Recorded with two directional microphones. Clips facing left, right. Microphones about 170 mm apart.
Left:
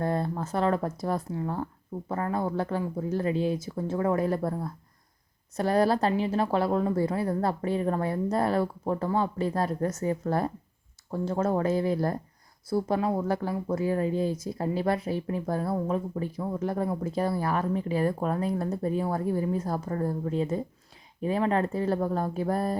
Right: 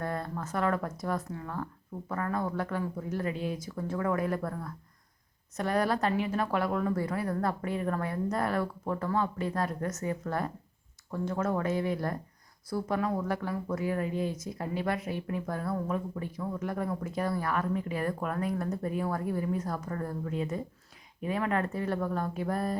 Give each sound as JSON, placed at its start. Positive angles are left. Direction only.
{"t": 0.0, "sound": "speech", "side_deg": 30}